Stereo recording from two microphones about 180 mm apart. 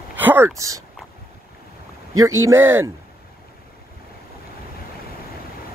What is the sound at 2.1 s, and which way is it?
Speech, 15° right (ahead or behind).